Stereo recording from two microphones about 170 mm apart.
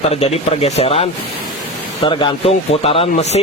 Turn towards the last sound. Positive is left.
turn(degrees=35)  # may be behind; listen again after turning